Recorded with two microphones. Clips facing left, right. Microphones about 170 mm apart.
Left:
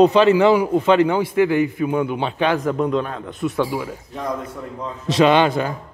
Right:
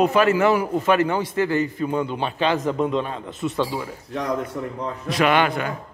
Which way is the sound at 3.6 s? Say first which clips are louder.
Left 3 dB; 10° left (ahead or behind).